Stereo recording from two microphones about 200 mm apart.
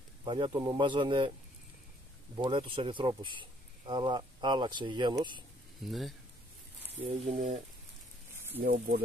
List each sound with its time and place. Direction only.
0.2 s speech: 25° right (ahead or behind)
2.3 s speech: 25° right (ahead or behind)
5.8 s speech: centre (ahead or behind)
7.0 s speech: 30° right (ahead or behind)
8.6 s speech: 55° right (ahead or behind)